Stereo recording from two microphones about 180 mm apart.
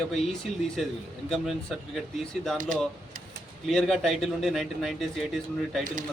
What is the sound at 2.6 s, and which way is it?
Speech, 45° right (ahead or behind).